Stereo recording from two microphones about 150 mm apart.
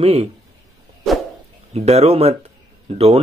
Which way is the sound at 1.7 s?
45° right (ahead or behind).